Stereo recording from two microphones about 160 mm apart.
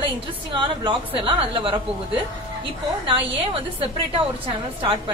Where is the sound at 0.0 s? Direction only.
30° right (ahead or behind).